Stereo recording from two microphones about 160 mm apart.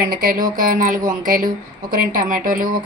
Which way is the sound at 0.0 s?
65° right (ahead or behind).